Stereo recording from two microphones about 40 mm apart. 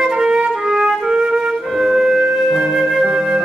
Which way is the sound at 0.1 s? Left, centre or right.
Centre.